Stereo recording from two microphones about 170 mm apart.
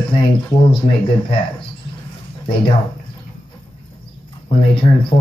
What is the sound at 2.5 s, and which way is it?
Speech, 30° left (ahead or behind).